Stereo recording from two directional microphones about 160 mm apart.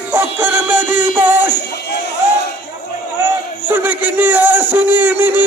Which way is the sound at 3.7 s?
10° right (ahead or behind).